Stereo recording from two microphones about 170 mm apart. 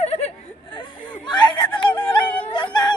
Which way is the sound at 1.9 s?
10° left (ahead or behind).